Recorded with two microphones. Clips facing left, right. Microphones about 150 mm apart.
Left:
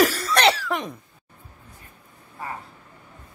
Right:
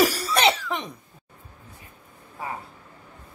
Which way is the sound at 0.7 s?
Centre (ahead or behind).